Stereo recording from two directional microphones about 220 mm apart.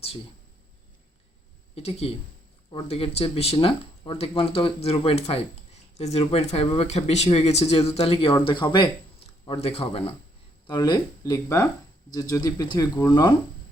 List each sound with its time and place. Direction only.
1.7 s speech: 25° left (ahead or behind)